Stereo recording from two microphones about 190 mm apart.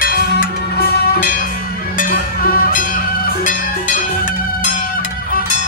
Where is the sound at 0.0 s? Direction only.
50° left (ahead or behind).